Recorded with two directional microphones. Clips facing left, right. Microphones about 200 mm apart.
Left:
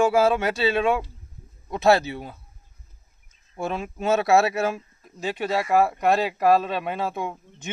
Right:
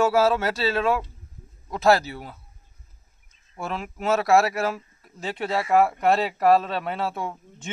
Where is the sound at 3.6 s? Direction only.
20° left (ahead or behind).